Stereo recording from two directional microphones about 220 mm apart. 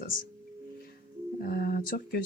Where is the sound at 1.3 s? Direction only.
45° left (ahead or behind).